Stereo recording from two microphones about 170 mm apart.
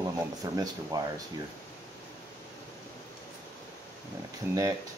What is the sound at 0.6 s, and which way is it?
Speech, 20° right (ahead or behind).